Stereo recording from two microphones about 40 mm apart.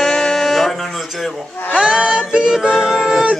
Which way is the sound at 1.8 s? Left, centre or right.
Right.